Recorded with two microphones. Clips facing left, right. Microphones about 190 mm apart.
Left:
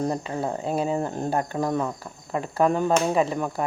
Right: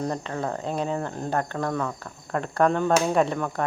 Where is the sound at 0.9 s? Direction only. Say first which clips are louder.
Left 2 dB; 20° left (ahead or behind).